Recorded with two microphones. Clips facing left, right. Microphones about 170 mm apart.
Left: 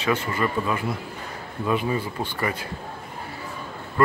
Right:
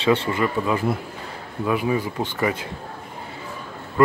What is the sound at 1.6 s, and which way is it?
Speech, 10° right (ahead or behind).